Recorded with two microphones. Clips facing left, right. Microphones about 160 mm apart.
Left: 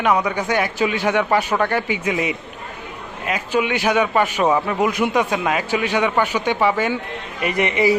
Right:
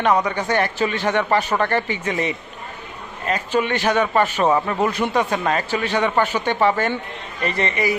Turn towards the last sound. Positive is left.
turn(degrees=20)  # may be behind; listen again after turning